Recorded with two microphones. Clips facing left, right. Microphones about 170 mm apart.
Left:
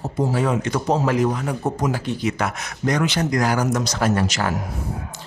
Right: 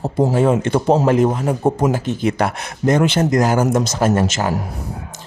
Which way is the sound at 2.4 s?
30° right (ahead or behind).